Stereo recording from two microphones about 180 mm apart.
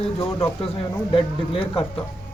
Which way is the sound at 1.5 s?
30° left (ahead or behind).